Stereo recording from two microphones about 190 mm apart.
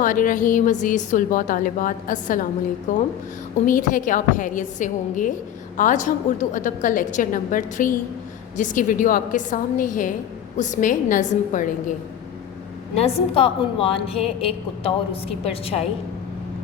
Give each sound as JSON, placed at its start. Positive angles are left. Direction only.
{"t": 0.0, "sound": "a woman's voice", "side_deg": 45}
{"t": 13.1, "sound": "a woman's voice", "side_deg": 30}